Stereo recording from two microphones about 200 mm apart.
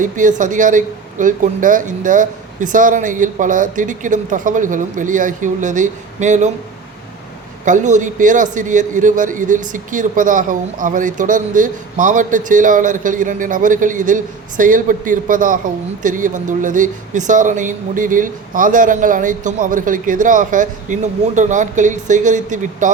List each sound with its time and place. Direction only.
0.0 s a man's voice: 40° right (ahead or behind)
7.6 s a man's voice: 40° right (ahead or behind)